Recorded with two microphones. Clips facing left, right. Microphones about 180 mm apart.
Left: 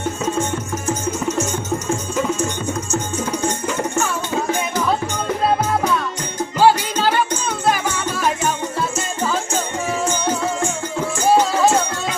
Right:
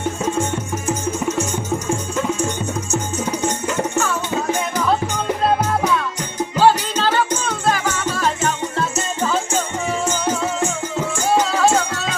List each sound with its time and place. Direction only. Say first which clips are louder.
6.6 s music: left 1 dB; 10° left (ahead or behind)